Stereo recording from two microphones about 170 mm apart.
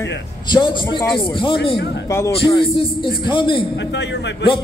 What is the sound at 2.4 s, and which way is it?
A man's voice, 30° left (ahead or behind).